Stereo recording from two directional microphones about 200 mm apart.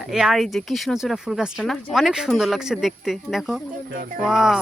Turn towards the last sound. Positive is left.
turn(degrees=0)  # may be behind; listen again after turning